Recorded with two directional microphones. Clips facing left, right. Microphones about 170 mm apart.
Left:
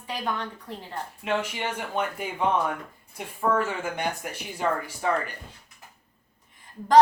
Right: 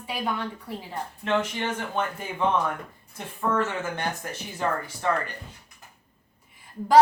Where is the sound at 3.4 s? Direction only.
10° left (ahead or behind).